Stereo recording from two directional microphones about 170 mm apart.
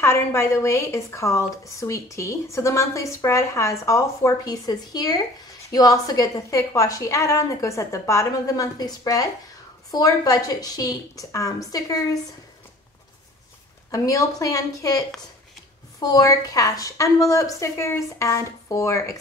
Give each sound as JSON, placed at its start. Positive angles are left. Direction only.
{"t": 0.0, "sound": "a woman's voice", "side_deg": 15}
{"t": 13.9, "sound": "a woman's voice", "side_deg": 20}